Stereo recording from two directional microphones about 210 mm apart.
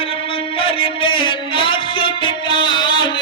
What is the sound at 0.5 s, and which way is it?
Music, 25° left (ahead or behind).